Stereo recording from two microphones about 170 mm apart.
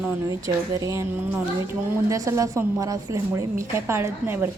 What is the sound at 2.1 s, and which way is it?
A woman's voice, 20° right (ahead or behind).